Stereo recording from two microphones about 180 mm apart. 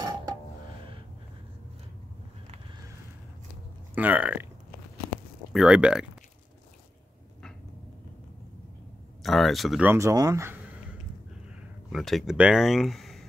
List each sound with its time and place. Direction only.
0.0 s music: 25° right (ahead or behind)
3.9 s speech: 10° right (ahead or behind)
5.5 s speech: 5° right (ahead or behind)
9.2 s speech: centre (ahead or behind); by 10.6 s 15° right (ahead or behind)
11.9 s speech: centre (ahead or behind)